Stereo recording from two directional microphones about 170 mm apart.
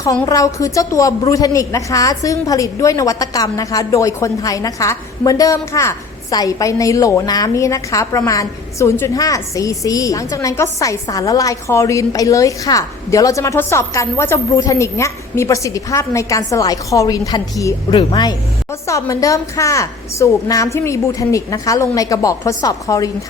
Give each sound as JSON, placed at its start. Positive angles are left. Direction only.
{"t": 0.0, "sound": "a woman's voice", "side_deg": 20}